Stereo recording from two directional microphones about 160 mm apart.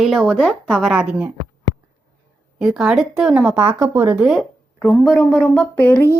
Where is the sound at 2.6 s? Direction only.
5° right (ahead or behind).